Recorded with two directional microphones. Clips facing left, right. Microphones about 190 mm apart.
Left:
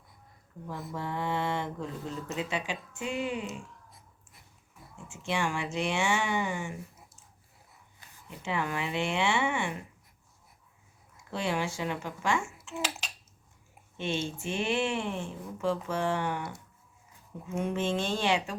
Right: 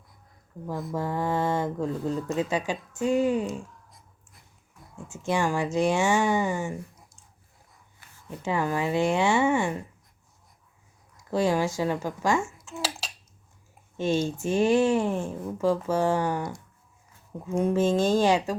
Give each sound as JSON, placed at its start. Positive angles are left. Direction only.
{"t": 0.9, "sound": "speech", "side_deg": -40}
{"t": 5.0, "sound": "speech", "side_deg": -40}
{"t": 8.4, "sound": "speech", "side_deg": -40}
{"t": 11.3, "sound": "speech", "side_deg": -40}
{"t": 12.7, "sound": "finger snapping", "side_deg": -45}
{"t": 13.9, "sound": "speech", "side_deg": -40}
{"t": 17.6, "sound": "speech", "side_deg": -40}